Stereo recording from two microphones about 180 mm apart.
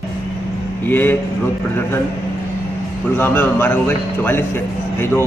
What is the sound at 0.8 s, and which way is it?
Speech, 10° left (ahead or behind).